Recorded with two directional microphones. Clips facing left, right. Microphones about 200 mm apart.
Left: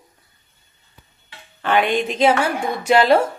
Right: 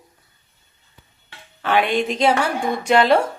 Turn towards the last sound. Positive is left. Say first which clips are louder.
# left 1 dB
turn(degrees=5)  # may be behind; listen again after turning